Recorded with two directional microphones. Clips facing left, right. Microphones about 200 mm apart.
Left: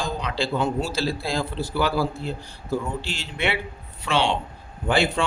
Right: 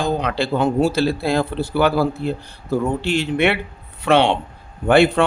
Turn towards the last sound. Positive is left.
turn(degrees=-60)  # may be behind; listen again after turning